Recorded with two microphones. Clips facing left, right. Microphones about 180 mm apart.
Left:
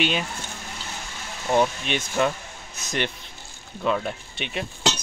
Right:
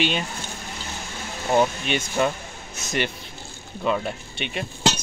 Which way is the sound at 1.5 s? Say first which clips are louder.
Right 1 dB; 5° right (ahead or behind).